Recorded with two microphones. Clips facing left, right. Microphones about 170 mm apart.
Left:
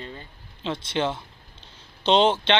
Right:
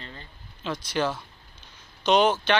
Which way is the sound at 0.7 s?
25° left (ahead or behind).